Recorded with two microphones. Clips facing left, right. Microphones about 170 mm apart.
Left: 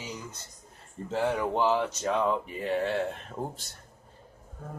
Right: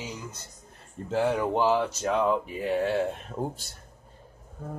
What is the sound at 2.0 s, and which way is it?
Speech, centre (ahead or behind).